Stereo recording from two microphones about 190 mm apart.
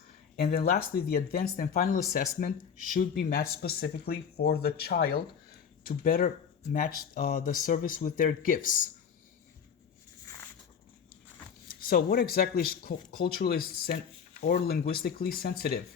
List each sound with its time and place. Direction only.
0.4 s speech: 55° left (ahead or behind)
11.7 s speech: 50° left (ahead or behind)